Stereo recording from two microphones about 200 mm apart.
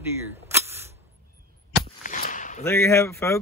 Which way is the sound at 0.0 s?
15° right (ahead or behind).